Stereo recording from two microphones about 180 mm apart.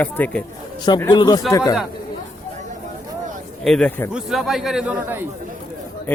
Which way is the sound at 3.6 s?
5° left (ahead or behind).